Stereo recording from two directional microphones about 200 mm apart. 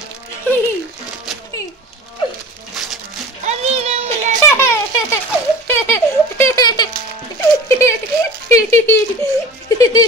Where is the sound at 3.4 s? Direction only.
30° right (ahead or behind).